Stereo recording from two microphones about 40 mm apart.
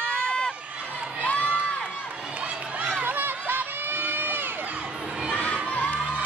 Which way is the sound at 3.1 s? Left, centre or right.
Right.